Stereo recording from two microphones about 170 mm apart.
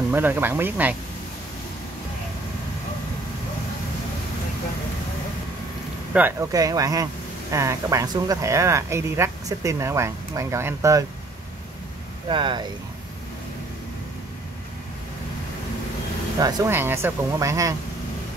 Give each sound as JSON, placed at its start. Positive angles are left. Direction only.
{"t": 0.1, "sound": "speech", "side_deg": -10}
{"t": 6.1, "sound": "speech", "side_deg": -5}
{"t": 6.5, "sound": "speech", "side_deg": -20}
{"t": 12.3, "sound": "speech", "side_deg": -30}
{"t": 16.3, "sound": "speech", "side_deg": -20}